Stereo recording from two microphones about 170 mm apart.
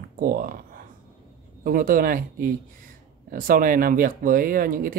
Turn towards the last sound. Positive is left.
turn(degrees=-55)  # may be behind; listen again after turning